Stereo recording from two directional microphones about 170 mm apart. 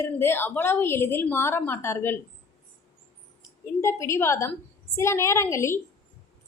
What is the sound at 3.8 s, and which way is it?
A woman's voice, 15° left (ahead or behind).